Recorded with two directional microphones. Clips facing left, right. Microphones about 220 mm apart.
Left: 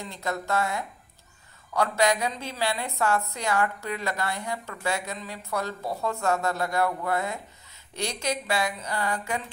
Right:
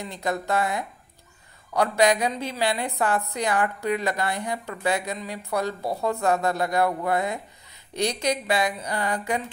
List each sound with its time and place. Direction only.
0.0 s a woman's voice: 15° right (ahead or behind)